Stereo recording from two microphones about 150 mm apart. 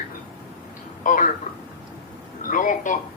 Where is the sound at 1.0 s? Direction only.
60° left (ahead or behind).